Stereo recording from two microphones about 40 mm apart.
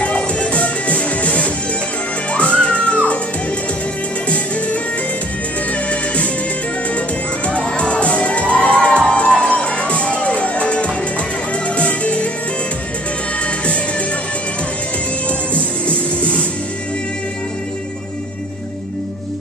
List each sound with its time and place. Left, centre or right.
0.0 s music: left
5.7 s music: left
7.4 s crowd: left
11.6 s music: left
15.2 s music: left